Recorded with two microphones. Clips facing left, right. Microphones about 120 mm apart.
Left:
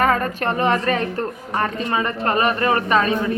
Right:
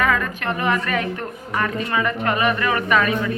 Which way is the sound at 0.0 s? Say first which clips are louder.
Left 3 dB; 40° left (ahead or behind).